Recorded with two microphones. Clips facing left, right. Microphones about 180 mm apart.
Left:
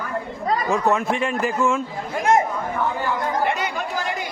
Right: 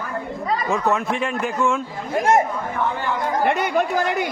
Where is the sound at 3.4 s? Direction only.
55° right (ahead or behind).